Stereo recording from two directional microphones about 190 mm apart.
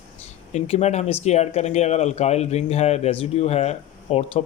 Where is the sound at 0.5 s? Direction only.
35° left (ahead or behind).